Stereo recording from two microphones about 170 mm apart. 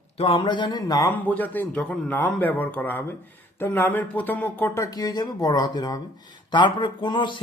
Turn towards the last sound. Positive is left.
turn(degrees=25)  # may be behind; listen again after turning